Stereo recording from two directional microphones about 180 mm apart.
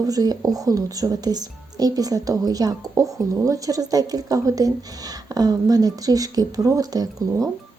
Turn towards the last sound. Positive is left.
turn(degrees=-20)  # may be behind; listen again after turning